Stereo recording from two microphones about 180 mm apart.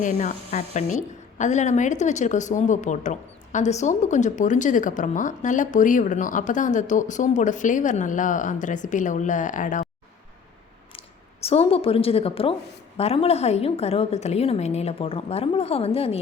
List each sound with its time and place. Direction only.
0.0 s a woman's voice: 45° left (ahead or behind)
10.9 s a woman's voice: 35° left (ahead or behind)